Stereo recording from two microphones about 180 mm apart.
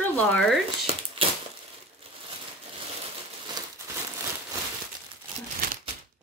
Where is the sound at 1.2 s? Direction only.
30° right (ahead or behind).